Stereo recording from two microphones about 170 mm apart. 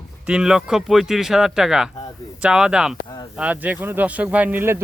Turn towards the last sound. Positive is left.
turn(degrees=-15)  # may be behind; listen again after turning